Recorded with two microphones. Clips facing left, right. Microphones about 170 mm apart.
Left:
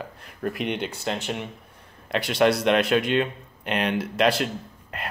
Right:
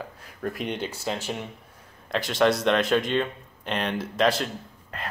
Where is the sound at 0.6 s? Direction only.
65° left (ahead or behind).